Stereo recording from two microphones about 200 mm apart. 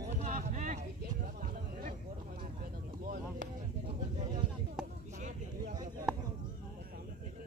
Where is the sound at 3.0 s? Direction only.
50° right (ahead or behind).